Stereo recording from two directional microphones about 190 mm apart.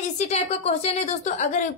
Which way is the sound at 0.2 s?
35° left (ahead or behind).